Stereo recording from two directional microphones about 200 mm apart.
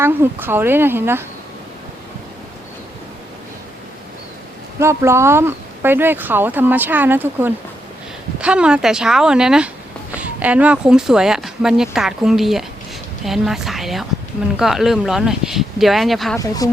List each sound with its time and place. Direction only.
0.0 s speech: 10° right (ahead or behind)
4.8 s speech: 15° right (ahead or behind)